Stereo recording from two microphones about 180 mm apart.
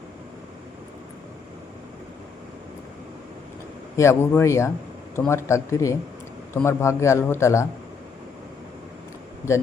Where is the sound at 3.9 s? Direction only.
15° left (ahead or behind).